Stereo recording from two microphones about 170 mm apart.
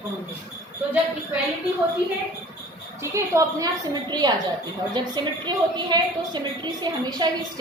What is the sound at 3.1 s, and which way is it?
A woman's voice, 20° right (ahead or behind).